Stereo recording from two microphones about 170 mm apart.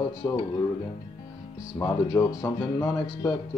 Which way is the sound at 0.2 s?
20° left (ahead or behind).